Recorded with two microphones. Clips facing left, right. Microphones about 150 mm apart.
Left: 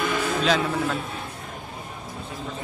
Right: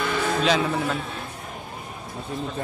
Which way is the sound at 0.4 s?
Centre (ahead or behind).